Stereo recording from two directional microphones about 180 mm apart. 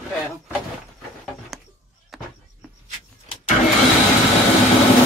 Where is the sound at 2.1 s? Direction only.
Centre (ahead or behind).